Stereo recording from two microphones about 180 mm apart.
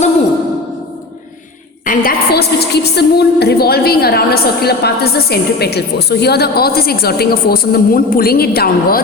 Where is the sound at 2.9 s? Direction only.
65° left (ahead or behind).